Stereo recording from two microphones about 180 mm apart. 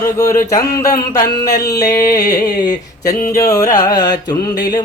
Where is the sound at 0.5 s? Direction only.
20° left (ahead or behind).